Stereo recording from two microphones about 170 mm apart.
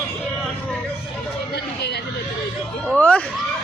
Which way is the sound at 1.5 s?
75° left (ahead or behind).